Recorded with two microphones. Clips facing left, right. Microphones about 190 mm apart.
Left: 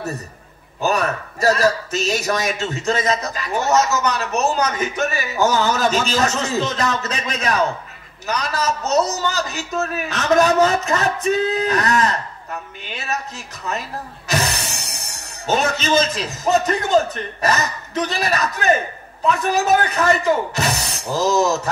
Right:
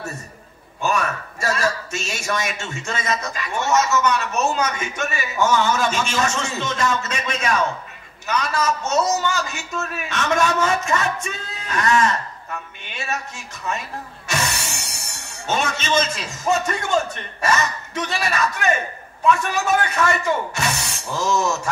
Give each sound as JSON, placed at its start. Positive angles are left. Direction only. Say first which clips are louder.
{"t": 0.7, "sound": "a man's voice", "louder": "left 3 dB", "side_deg": 35}